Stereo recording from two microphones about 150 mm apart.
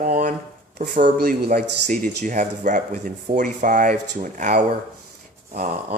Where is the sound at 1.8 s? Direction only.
55° right (ahead or behind).